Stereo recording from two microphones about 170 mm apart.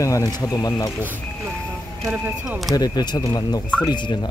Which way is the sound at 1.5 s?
5° left (ahead or behind).